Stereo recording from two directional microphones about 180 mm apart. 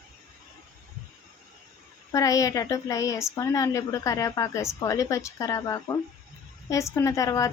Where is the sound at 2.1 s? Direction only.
20° left (ahead or behind).